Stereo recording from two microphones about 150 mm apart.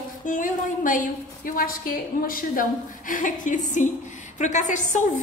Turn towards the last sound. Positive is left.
turn(degrees=55)  # may be behind; listen again after turning